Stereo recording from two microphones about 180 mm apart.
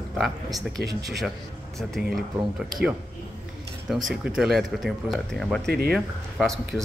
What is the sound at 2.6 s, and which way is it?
Speech, centre (ahead or behind).